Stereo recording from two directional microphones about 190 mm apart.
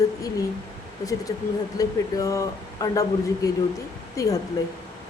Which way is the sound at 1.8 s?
20° left (ahead or behind).